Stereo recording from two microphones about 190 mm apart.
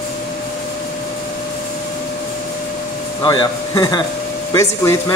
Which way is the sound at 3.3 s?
20° left (ahead or behind).